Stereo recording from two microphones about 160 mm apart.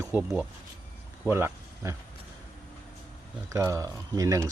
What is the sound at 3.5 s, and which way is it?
Speech, 20° right (ahead or behind).